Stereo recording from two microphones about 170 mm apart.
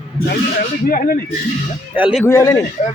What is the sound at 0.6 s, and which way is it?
Speech, 55° left (ahead or behind).